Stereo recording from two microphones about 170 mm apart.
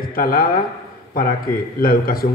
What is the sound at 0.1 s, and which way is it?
A man's voice, 60° left (ahead or behind).